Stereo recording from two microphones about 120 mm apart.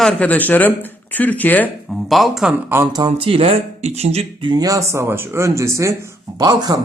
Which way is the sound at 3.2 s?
50° right (ahead or behind).